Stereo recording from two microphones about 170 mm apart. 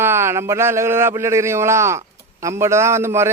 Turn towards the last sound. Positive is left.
turn(degrees=-15)  # may be behind; listen again after turning